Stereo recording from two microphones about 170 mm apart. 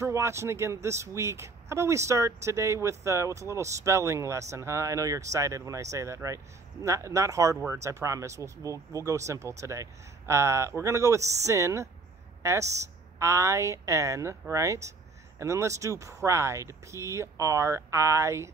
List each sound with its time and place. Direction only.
0.0 s speech: 15° right (ahead or behind)